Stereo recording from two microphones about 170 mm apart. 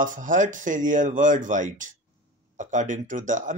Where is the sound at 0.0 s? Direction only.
50° right (ahead or behind).